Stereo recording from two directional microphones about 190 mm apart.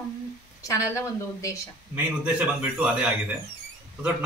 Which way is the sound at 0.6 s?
15° left (ahead or behind).